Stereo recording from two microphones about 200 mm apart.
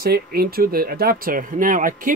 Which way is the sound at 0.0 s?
50° right (ahead or behind).